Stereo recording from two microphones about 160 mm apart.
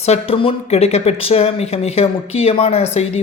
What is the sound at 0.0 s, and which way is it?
Speech, 40° left (ahead or behind).